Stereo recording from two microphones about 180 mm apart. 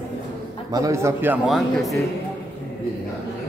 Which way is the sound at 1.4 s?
Centre (ahead or behind).